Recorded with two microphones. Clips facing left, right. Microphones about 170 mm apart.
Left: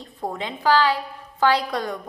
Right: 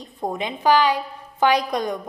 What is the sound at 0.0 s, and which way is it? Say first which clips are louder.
A woman's voice: right 3 dB; 15° right (ahead or behind).